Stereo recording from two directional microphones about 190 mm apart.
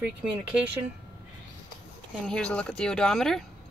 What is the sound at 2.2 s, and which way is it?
Speech, 5° left (ahead or behind).